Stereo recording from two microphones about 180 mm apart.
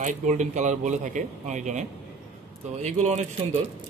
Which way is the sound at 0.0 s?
40° right (ahead or behind).